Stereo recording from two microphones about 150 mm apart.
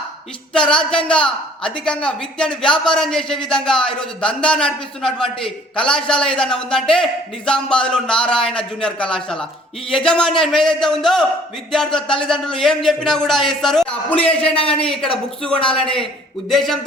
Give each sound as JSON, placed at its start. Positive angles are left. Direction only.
{"t": 0.5, "sound": "a man's voice", "side_deg": 5}
{"t": 14.6, "sound": "speech", "side_deg": 35}
{"t": 16.5, "sound": "a man's voice", "side_deg": 0}